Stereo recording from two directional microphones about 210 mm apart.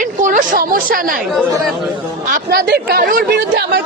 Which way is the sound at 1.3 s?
Centre (ahead or behind).